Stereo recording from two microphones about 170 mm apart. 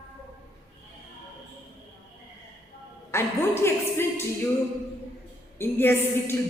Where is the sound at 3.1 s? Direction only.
15° left (ahead or behind).